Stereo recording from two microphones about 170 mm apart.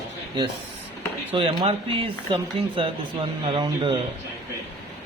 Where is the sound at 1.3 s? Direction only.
30° right (ahead or behind).